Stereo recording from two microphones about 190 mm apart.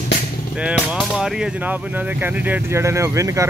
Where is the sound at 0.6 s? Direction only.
5° right (ahead or behind).